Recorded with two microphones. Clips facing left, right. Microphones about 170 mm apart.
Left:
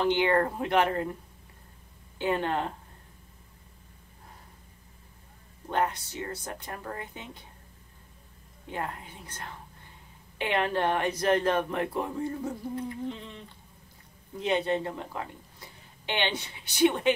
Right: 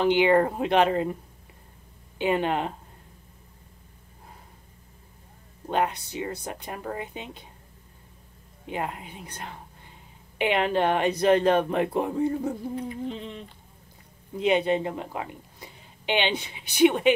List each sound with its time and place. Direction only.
0.0 s speech: 15° right (ahead or behind)
2.1 s speech: 15° right (ahead or behind)
5.7 s speech: 15° right (ahead or behind)
8.6 s speech: 20° right (ahead or behind)
14.4 s speech: 15° right (ahead or behind)